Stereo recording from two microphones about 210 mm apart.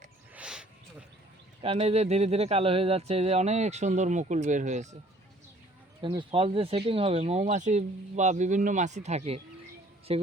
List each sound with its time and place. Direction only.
0.3 s a sound: 5° right (ahead or behind)
1.6 s speech: 30° right (ahead or behind)
6.0 s a woman's voice: 25° right (ahead or behind)